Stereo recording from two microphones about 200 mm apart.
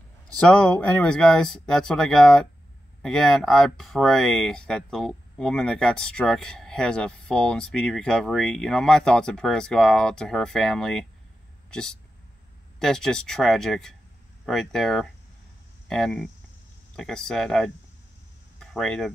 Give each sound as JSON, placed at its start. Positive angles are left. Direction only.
{"t": 0.4, "sound": "speech", "side_deg": 5}